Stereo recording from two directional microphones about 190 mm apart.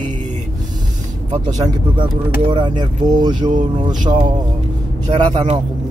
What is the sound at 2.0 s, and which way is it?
Speech, 25° right (ahead or behind).